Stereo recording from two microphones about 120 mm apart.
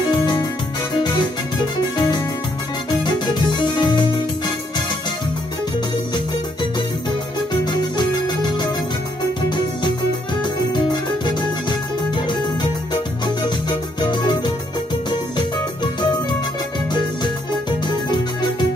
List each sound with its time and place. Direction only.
0.1 s keyboard: 35° left (ahead or behind)
3.5 s music: 40° left (ahead or behind)
7.6 s music: 35° left (ahead or behind)
10.4 s music: 40° left (ahead or behind)
13.2 s music: 35° left (ahead or behind)
16.9 s music: 40° left (ahead or behind)